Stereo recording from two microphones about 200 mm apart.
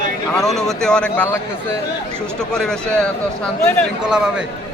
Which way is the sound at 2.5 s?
5° left (ahead or behind).